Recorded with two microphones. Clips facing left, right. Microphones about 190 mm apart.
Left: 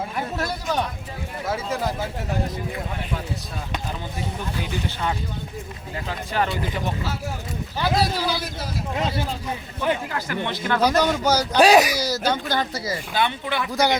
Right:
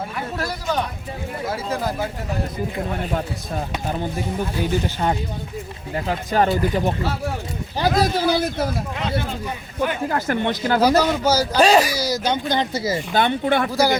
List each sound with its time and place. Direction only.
1.5 s a man's voice: centre (ahead or behind)
3.1 s speech: 45° right (ahead or behind)
6.1 s speech: 40° right (ahead or behind)
10.1 s speech: 50° right (ahead or behind)
10.6 s speech: 35° right (ahead or behind)
10.8 s a man's voice: 5° right (ahead or behind)
11.6 s speech: 10° left (ahead or behind)
11.9 s speech: 10° right (ahead or behind)
13.1 s speech: 50° right (ahead or behind)
13.7 s a man's voice: centre (ahead or behind)